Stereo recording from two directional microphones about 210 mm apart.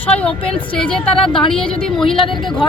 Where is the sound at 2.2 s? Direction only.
25° left (ahead or behind).